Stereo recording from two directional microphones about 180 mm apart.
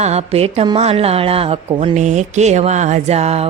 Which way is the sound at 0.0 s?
35° right (ahead or behind).